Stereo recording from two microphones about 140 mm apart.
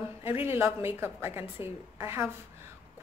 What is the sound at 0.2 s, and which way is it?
A woman's voice, 15° right (ahead or behind).